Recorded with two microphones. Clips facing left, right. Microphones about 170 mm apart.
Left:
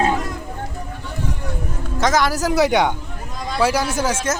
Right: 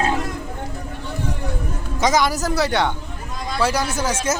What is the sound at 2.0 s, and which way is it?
Speech, centre (ahead or behind).